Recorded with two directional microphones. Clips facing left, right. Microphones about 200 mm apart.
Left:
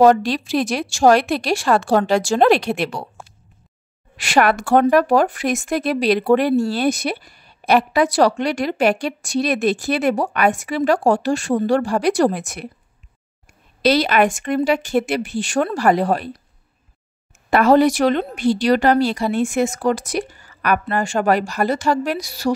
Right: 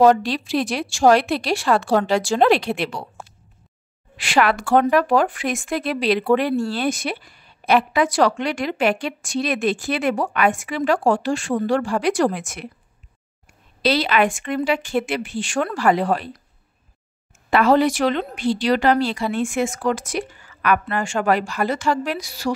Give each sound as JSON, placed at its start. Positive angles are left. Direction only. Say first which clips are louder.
{"t": 0.0, "sound": "speech", "louder": "left 2 dB", "side_deg": 45}
{"t": 4.2, "sound": "speech", "louder": "left 2 dB", "side_deg": 45}
{"t": 14.0, "sound": "speech", "louder": "left 2 dB", "side_deg": 45}
{"t": 17.5, "sound": "speech", "louder": "left 3 dB", "side_deg": 45}